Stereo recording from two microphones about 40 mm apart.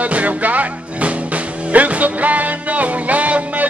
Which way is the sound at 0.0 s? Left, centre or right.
Right.